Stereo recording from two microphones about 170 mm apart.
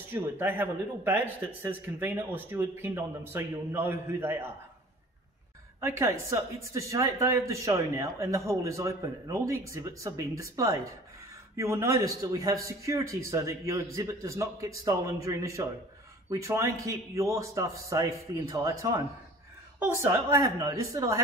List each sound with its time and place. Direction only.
0.1 s speech: 10° right (ahead or behind)
5.8 s speech: 15° right (ahead or behind)